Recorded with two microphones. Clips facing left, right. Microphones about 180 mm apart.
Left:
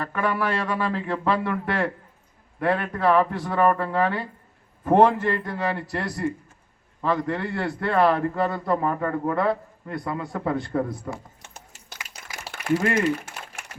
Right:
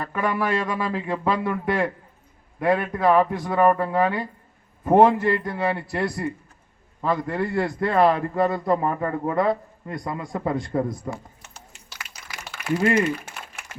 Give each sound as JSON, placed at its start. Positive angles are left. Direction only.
{"t": 0.0, "sound": "a man's voice", "side_deg": -10}
{"t": 11.5, "sound": "typing", "side_deg": 50}
{"t": 12.0, "sound": "a sound", "side_deg": 45}